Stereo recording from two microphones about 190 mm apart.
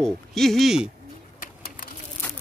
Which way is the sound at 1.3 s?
50° left (ahead or behind).